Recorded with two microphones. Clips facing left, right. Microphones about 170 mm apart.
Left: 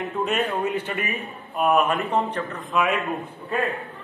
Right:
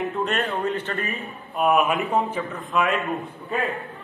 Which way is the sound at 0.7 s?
15° left (ahead or behind).